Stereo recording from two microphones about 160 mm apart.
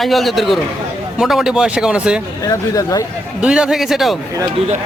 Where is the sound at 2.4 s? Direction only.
20° left (ahead or behind).